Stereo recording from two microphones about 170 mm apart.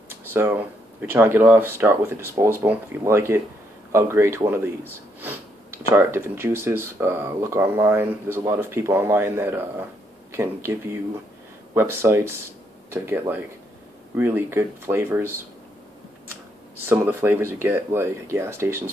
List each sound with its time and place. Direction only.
0.1 s a sound: 10° right (ahead or behind)
1.0 s speech: 10° right (ahead or behind)
16.8 s speech: 15° right (ahead or behind)